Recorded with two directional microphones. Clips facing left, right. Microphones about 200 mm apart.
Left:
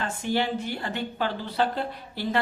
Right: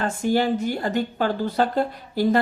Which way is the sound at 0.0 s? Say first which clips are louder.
Right 6 dB; 45° right (ahead or behind).